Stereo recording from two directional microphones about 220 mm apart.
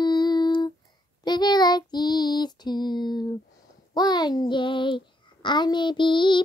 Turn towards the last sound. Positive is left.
turn(degrees=20)  # may be behind; listen again after turning